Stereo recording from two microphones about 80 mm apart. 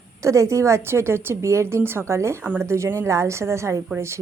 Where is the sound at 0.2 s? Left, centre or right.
Right.